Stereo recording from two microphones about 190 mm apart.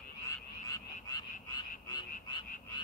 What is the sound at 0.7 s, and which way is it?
Frog, 20° left (ahead or behind).